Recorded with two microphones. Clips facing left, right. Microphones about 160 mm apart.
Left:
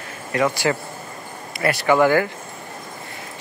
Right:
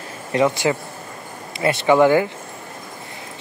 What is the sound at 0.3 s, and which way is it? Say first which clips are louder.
Speech: right 2 dB; 25° right (ahead or behind).